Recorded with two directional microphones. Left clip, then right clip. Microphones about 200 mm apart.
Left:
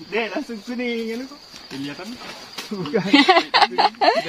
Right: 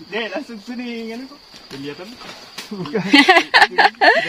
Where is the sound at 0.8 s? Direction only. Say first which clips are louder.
Left 4 dB; 15° right (ahead or behind).